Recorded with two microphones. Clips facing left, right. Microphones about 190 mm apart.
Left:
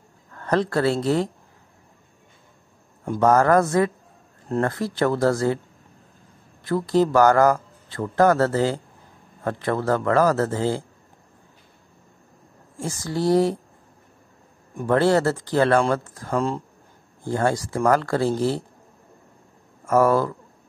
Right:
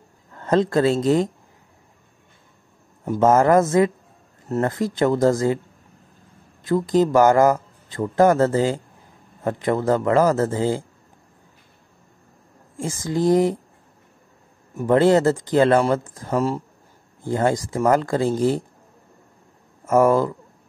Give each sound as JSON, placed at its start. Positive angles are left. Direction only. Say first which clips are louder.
{"t": 0.3, "sound": "speech", "louder": "right 3 dB", "side_deg": -20}
{"t": 3.2, "sound": "speech", "louder": "right 2 dB", "side_deg": -20}
{"t": 6.6, "sound": "speech", "louder": "right 2 dB", "side_deg": -15}
{"t": 13.0, "sound": "speech", "louder": "right 2 dB", "side_deg": -20}
{"t": 14.9, "sound": "speech", "louder": "right 3 dB", "side_deg": -20}
{"t": 16.3, "sound": "speech", "louder": "right 2 dB", "side_deg": -5}
{"t": 17.2, "sound": "speech", "louder": "right 2 dB", "side_deg": -15}
{"t": 19.8, "sound": "speech", "louder": "right 2 dB", "side_deg": -15}